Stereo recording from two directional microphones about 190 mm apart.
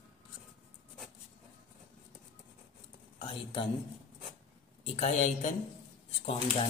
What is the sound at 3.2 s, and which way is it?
Speech, 25° left (ahead or behind).